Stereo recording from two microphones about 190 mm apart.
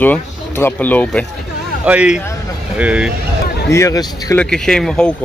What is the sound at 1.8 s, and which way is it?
Speech, 5° right (ahead or behind).